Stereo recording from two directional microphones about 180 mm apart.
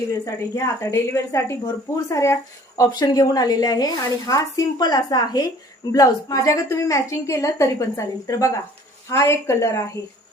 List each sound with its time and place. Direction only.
0.1 s a woman's voice: 20° left (ahead or behind)